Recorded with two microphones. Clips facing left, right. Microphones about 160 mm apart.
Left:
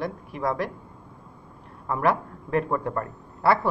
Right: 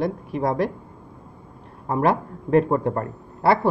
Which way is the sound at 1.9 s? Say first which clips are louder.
Right 3 dB; 30° right (ahead or behind).